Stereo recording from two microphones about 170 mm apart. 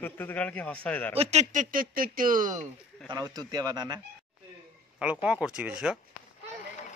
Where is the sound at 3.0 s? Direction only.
25° right (ahead or behind).